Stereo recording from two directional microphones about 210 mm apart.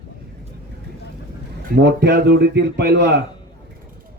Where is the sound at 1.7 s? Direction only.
55° right (ahead or behind).